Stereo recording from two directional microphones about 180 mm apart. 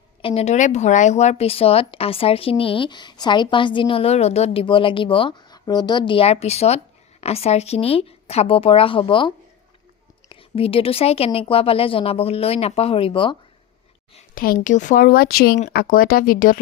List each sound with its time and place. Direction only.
0.2 s speech: 30° left (ahead or behind)
14.3 s speech: 55° left (ahead or behind)